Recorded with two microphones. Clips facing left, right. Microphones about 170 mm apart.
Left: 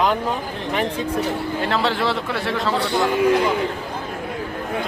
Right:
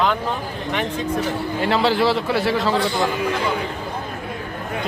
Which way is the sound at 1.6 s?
Centre (ahead or behind).